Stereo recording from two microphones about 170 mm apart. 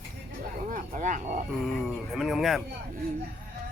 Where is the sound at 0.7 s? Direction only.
45° right (ahead or behind).